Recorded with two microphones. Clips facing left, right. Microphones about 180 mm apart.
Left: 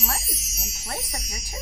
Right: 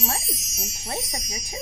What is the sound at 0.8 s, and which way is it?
Speech, 20° right (ahead or behind).